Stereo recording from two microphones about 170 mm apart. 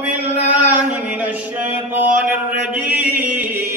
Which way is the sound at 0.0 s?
10° right (ahead or behind).